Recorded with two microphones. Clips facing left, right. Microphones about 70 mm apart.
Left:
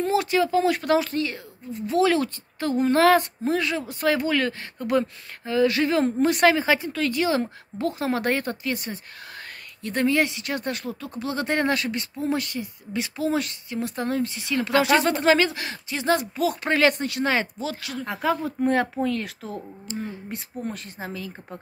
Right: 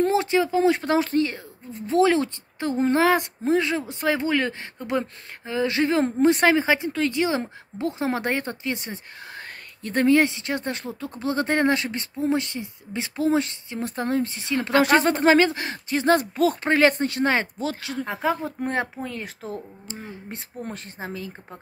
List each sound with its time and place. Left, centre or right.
0.1 s speech: right
9.8 s speech: right